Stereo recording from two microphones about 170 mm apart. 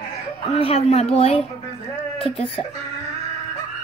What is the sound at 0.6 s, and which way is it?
Speech, 35° left (ahead or behind).